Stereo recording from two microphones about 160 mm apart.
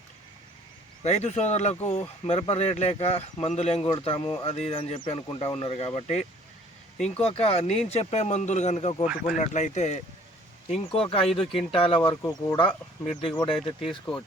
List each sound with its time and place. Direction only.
1.0 s speech: 45° left (ahead or behind)
10.8 s speech: 35° left (ahead or behind)
12.0 s speech: 25° left (ahead or behind)